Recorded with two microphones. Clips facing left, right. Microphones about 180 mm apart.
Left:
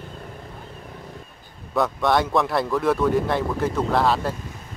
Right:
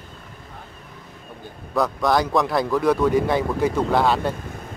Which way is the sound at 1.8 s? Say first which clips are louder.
Even; centre (ahead or behind).